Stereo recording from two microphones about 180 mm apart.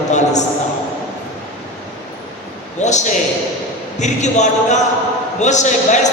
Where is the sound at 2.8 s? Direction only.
40° left (ahead or behind).